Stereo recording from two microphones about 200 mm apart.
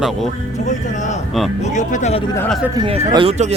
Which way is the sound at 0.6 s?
40° left (ahead or behind).